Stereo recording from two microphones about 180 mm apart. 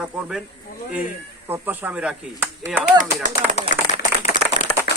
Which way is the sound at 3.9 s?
40° left (ahead or behind).